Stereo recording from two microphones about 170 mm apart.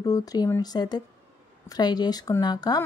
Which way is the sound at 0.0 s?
20° left (ahead or behind).